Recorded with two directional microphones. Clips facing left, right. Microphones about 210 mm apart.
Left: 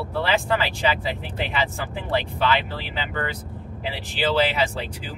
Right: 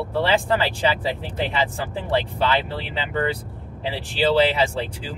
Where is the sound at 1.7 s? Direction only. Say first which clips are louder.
Right 2 dB; 30° right (ahead or behind).